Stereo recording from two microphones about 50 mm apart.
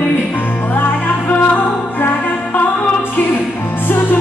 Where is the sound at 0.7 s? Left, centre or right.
Left.